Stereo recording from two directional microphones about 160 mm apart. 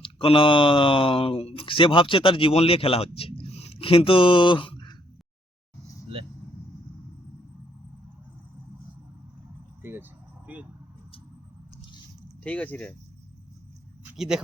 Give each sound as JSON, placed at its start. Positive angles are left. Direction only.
{"t": 0.0, "sound": "speech", "side_deg": 35}
{"t": 9.8, "sound": "vehicle", "side_deg": -15}
{"t": 12.4, "sound": "speech", "side_deg": 10}
{"t": 14.1, "sound": "speech", "side_deg": -5}